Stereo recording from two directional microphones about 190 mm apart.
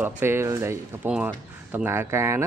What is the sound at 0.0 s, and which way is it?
Speech, 10° right (ahead or behind).